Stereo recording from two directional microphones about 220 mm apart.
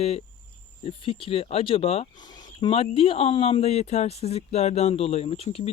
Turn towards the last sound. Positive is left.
turn(degrees=25)  # may be behind; listen again after turning